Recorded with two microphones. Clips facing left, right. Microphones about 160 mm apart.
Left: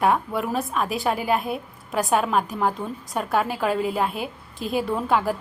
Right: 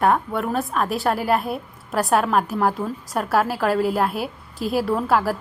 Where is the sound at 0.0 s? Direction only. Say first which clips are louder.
Right 2 dB; centre (ahead or behind).